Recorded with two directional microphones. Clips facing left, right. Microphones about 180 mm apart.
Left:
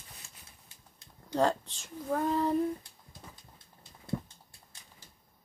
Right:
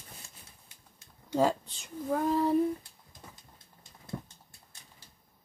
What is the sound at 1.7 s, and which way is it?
Child singing, centre (ahead or behind).